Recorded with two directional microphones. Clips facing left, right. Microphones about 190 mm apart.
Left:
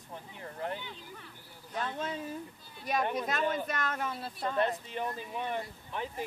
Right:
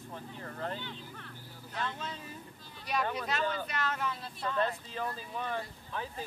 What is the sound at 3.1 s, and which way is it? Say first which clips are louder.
Speech: left 2 dB; 45° left (ahead or behind).